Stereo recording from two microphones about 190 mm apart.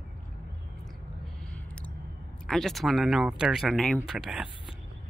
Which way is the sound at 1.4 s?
5° left (ahead or behind).